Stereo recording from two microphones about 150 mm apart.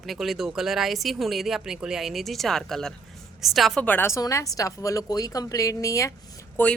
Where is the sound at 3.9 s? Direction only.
15° left (ahead or behind).